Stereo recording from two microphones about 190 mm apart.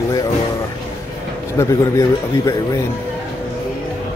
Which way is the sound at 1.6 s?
20° left (ahead or behind).